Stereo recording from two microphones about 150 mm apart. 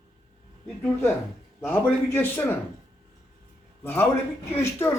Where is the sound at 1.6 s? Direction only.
15° left (ahead or behind).